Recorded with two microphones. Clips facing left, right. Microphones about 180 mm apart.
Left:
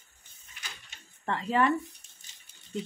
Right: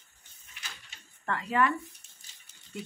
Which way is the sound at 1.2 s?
25° left (ahead or behind).